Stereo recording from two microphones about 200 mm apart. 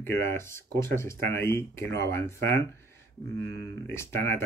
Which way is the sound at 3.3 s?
55° right (ahead or behind).